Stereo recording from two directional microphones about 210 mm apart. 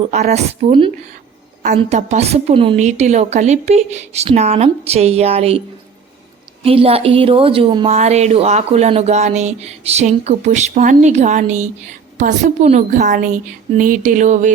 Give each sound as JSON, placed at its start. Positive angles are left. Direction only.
{"t": 0.1, "sound": "a woman's voice", "side_deg": -30}